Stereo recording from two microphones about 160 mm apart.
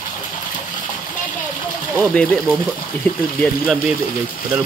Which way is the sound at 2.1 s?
5° left (ahead or behind).